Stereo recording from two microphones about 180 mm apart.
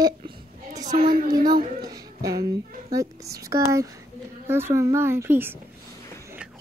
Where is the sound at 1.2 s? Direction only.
20° right (ahead or behind).